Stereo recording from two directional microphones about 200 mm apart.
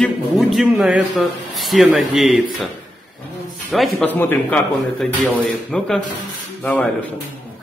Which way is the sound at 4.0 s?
10° left (ahead or behind).